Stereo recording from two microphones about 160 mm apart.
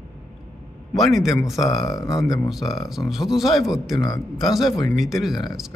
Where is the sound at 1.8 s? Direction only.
20° left (ahead or behind).